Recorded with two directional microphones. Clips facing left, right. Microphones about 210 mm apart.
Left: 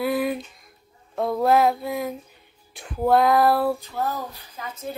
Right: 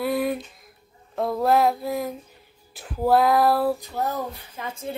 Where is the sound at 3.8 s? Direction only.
20° right (ahead or behind).